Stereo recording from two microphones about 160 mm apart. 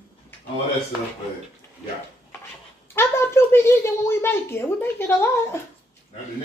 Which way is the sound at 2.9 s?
15° left (ahead or behind).